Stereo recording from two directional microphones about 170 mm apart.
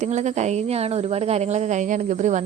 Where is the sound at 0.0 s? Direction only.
40° right (ahead or behind).